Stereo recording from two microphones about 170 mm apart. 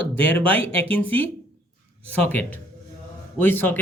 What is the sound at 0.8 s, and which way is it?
Speech, 10° left (ahead or behind).